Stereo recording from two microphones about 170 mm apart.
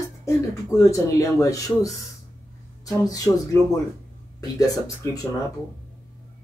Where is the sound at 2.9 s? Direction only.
20° left (ahead or behind).